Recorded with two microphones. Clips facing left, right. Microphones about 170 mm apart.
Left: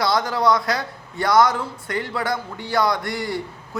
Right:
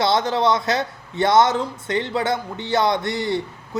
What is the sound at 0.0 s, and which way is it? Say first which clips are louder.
Speech: right 1 dB; 25° right (ahead or behind).